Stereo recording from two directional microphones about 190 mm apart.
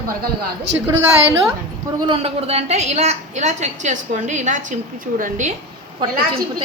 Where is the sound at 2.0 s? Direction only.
25° right (ahead or behind).